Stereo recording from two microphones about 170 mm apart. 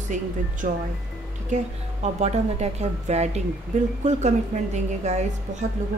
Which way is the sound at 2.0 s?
40° right (ahead or behind).